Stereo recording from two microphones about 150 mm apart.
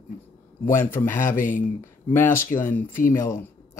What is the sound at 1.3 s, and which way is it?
Speech, 65° left (ahead or behind).